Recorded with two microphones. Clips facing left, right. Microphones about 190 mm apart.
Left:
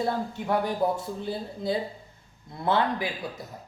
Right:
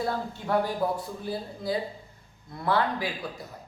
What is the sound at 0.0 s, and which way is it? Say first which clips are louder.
Speech: left 2 dB; 20° left (ahead or behind).